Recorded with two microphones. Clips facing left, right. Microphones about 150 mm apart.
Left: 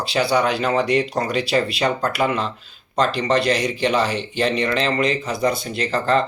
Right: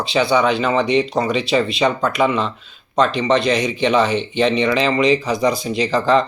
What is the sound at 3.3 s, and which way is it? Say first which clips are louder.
Speech: right 2 dB; 10° left (ahead or behind).